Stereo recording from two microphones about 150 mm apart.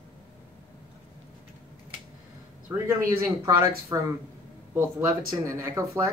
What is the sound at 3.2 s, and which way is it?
Speech, 20° right (ahead or behind).